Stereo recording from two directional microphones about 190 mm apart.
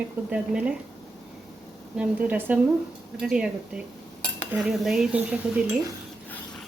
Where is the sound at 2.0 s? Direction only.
10° right (ahead or behind).